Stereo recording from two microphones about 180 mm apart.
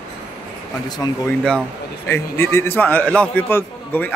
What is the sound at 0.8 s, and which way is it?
A man's voice, 20° left (ahead or behind).